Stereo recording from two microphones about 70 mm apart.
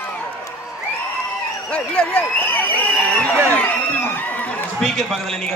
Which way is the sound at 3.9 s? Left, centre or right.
Left.